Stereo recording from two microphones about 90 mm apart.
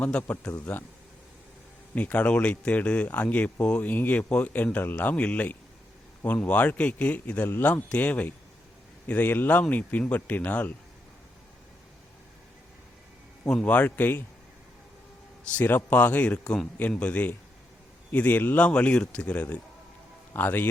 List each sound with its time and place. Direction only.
0.0 s a man's voice: 15° left (ahead or behind)
2.0 s speech: 15° left (ahead or behind)
13.4 s a man's voice: 10° left (ahead or behind)
15.4 s a man's voice: 20° left (ahead or behind)